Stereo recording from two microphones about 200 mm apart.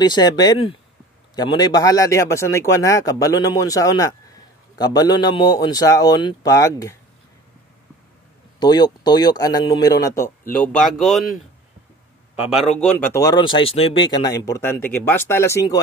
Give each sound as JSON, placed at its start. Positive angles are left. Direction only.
{"t": 0.0, "sound": "a man's voice", "side_deg": 20}
{"t": 8.5, "sound": "a man's voice", "side_deg": 20}
{"t": 12.4, "sound": "a man's voice", "side_deg": 0}
{"t": 14.1, "sound": "a man's voice", "side_deg": 20}